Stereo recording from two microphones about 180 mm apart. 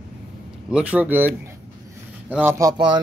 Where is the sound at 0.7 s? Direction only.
5° right (ahead or behind).